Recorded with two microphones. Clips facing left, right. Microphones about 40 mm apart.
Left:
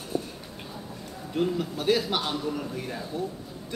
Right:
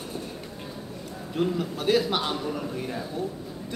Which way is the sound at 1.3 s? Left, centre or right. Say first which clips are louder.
Even; centre.